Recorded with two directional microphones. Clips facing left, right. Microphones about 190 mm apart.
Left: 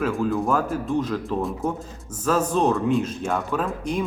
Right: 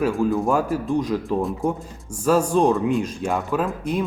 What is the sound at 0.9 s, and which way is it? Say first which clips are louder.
Speech: right 2 dB; 15° right (ahead or behind).